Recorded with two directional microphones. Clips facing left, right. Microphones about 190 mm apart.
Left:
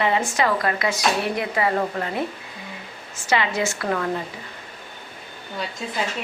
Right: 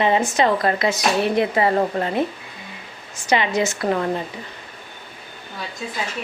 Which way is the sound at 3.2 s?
20° right (ahead or behind).